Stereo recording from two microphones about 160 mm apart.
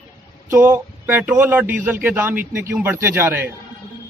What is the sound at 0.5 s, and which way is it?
Speech, 15° right (ahead or behind).